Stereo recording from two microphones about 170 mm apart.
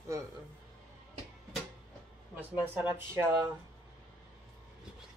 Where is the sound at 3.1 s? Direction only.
15° right (ahead or behind).